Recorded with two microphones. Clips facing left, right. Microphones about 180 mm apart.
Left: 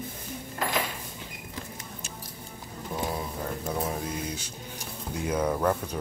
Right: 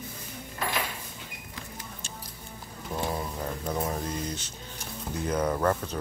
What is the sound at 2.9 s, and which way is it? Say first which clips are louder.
Speech: right 1 dB; 5° left (ahead or behind).